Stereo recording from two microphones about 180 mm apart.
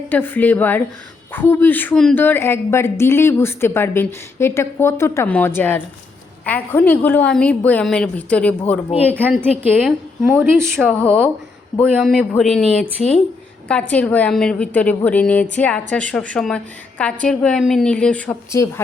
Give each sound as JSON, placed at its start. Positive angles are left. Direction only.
{"t": 0.1, "sound": "a woman's voice", "side_deg": 10}
{"t": 9.4, "sound": "a woman's voice", "side_deg": -5}
{"t": 10.8, "sound": "a woman's voice", "side_deg": 5}